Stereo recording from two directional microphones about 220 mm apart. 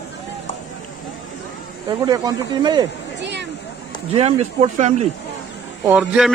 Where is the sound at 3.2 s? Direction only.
50° right (ahead or behind).